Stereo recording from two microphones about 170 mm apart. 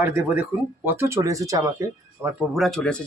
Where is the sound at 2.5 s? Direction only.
Centre (ahead or behind).